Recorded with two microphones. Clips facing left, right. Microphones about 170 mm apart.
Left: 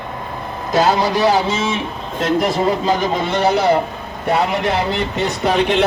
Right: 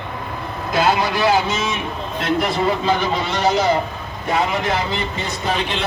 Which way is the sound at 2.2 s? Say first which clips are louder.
Left 3 dB; 40° left (ahead or behind).